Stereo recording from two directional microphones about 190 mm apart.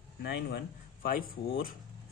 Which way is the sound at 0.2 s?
55° left (ahead or behind).